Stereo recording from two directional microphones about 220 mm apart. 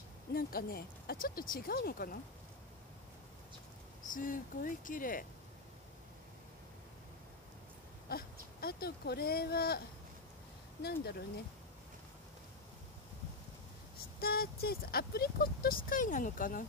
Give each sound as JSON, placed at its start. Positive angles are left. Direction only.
{"t": 0.3, "sound": "speech", "side_deg": 40}
{"t": 4.1, "sound": "speech", "side_deg": 40}
{"t": 8.1, "sound": "speech", "side_deg": 45}
{"t": 10.8, "sound": "speech", "side_deg": 45}
{"t": 14.2, "sound": "speech", "side_deg": 45}